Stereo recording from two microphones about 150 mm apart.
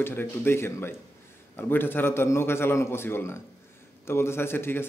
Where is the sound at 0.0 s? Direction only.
15° left (ahead or behind).